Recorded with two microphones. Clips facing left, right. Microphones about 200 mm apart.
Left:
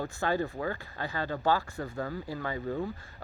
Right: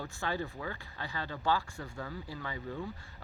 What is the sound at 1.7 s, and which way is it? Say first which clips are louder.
A man's voice: left 7 dB; 55° left (ahead or behind).